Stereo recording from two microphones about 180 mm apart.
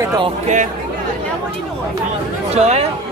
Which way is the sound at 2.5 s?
35° right (ahead or behind).